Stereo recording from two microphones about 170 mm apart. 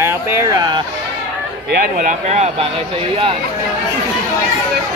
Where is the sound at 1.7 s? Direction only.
60° right (ahead or behind).